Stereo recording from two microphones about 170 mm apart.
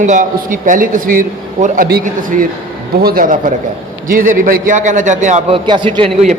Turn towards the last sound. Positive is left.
turn(degrees=-30)  # may be behind; listen again after turning